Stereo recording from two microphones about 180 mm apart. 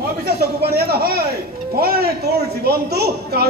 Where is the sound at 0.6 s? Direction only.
60° right (ahead or behind).